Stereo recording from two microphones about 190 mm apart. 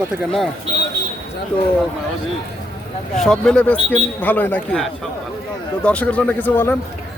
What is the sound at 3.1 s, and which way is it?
A man's voice, centre (ahead or behind).